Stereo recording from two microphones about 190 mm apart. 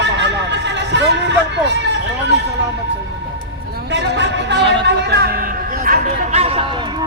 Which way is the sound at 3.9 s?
65° right (ahead or behind).